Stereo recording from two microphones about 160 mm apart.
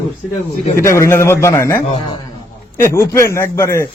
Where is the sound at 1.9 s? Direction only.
30° left (ahead or behind).